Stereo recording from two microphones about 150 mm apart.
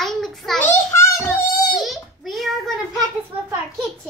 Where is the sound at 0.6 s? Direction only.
15° left (ahead or behind).